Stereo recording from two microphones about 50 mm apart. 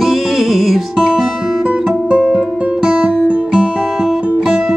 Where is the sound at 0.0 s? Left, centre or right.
Centre.